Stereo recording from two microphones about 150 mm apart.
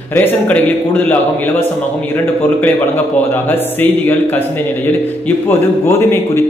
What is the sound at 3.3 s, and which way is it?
A man's voice, 15° left (ahead or behind).